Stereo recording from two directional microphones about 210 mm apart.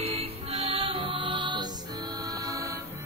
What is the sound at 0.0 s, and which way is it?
Music, 30° right (ahead or behind).